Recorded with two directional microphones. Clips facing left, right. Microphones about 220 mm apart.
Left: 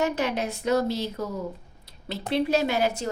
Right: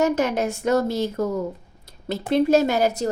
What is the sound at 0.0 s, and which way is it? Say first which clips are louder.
A woman's voice: right 5 dB; 45° right (ahead or behind).